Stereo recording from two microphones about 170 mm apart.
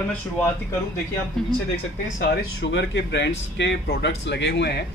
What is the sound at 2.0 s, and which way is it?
Speech, 65° left (ahead or behind).